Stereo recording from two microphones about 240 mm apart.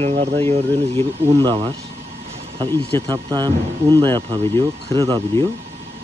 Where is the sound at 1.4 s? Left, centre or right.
Centre.